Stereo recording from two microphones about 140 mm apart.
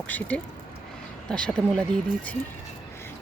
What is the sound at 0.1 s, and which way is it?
Speech, 10° left (ahead or behind).